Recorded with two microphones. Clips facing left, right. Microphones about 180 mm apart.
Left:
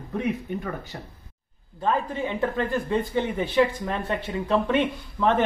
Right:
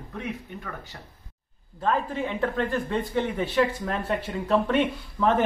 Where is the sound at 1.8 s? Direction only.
5° left (ahead or behind).